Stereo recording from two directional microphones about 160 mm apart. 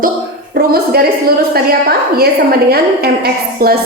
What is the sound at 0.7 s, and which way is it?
A woman's voice, 75° right (ahead or behind).